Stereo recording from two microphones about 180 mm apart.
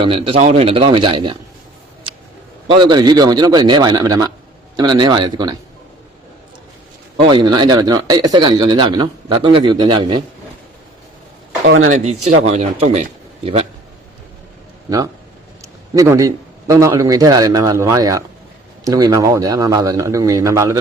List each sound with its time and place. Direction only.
0.0 s speech: 30° right (ahead or behind)
2.6 s speech: 25° right (ahead or behind)
7.3 s speech: 25° right (ahead or behind)
11.9 s a man's voice: 40° right (ahead or behind)
14.8 s a man's voice: 20° right (ahead or behind)